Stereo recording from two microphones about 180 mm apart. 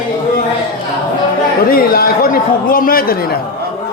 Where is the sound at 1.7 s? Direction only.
55° left (ahead or behind).